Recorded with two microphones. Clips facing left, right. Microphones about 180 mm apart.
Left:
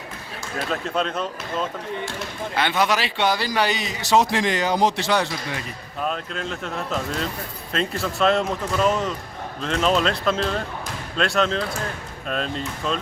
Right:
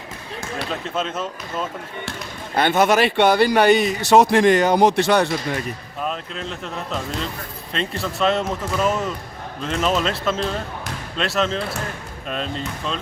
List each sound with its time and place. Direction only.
0.7 s speech: centre (ahead or behind)
2.6 s a man's voice: 50° right (ahead or behind)
6.0 s speech: centre (ahead or behind)